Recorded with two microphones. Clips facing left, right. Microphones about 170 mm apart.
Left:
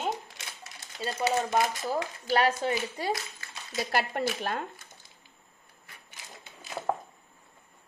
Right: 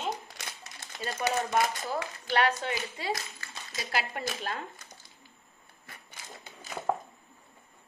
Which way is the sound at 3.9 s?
55° left (ahead or behind).